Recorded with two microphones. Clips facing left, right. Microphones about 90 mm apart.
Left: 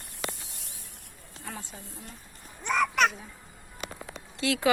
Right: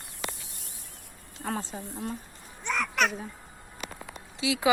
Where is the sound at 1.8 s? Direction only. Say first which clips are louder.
Right 10 dB; 90° right.